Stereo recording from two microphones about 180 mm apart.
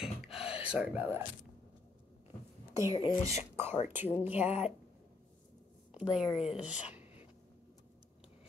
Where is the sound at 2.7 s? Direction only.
15° right (ahead or behind).